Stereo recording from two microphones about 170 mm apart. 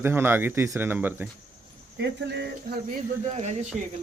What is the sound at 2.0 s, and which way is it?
Speech, 85° right.